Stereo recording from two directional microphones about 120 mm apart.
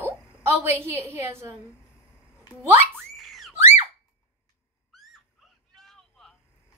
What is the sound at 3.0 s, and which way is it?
Boing, centre (ahead or behind).